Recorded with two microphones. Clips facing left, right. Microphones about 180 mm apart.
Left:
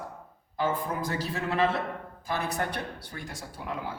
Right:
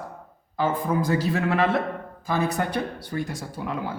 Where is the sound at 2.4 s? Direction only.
90° right.